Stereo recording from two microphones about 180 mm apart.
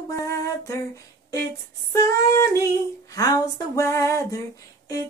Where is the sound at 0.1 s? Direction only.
20° left (ahead or behind).